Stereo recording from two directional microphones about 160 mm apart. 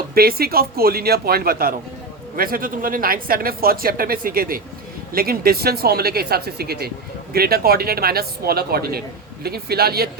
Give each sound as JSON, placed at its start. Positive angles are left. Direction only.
{"t": 0.1, "sound": "speech", "side_deg": -70}